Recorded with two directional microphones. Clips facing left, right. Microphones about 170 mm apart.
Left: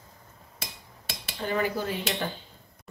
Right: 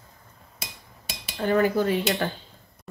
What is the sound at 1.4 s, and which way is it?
Dishes, 45° right (ahead or behind).